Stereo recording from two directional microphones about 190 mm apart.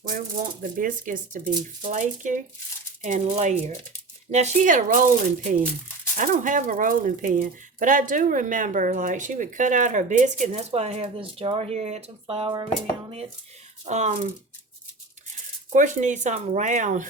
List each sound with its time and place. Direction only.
0.1 s speech: 45° right (ahead or behind); by 12.6 s 25° right (ahead or behind)
13.8 s speech: 35° right (ahead or behind)
15.7 s speech: 40° right (ahead or behind)